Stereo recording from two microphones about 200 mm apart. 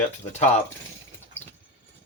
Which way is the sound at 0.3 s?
35° left (ahead or behind).